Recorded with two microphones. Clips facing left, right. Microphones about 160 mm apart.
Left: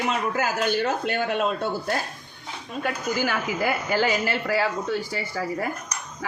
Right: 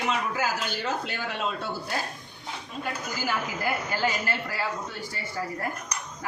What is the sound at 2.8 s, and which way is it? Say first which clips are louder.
A woman's voice: left 6 dB; 75° left (ahead or behind).